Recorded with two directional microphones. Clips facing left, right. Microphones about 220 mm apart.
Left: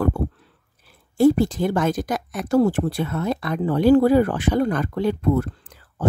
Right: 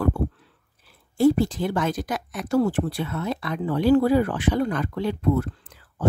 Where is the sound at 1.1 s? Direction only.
45° left (ahead or behind).